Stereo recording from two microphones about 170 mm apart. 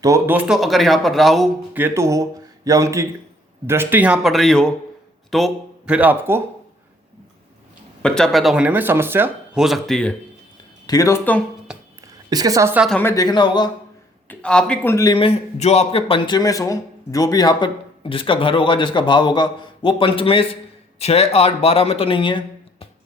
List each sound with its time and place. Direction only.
0.0 s speech: 15° right (ahead or behind)
1.7 s a man's voice: 15° right (ahead or behind)
8.0 s speech: 5° left (ahead or behind); by 9.6 s 10° right (ahead or behind)
9.6 s speech: centre (ahead or behind)
10.8 s speech: 20° left (ahead or behind)
11.7 s a sound: 5° right (ahead or behind)
12.0 s a woman's voice: 20° right (ahead or behind)
13.0 s a man's voice: 15° left (ahead or behind)
14.3 s speech: 5° left (ahead or behind)
14.9 s a man's voice: 25° left (ahead or behind)